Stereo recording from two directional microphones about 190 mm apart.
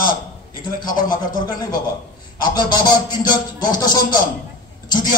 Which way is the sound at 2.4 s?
20° left (ahead or behind).